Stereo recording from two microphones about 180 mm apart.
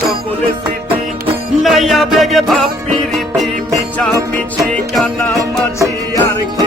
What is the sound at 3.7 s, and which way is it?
Music, 5° left (ahead or behind).